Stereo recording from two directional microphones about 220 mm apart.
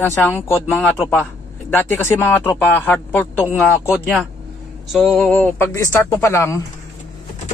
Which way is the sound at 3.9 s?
5° right (ahead or behind).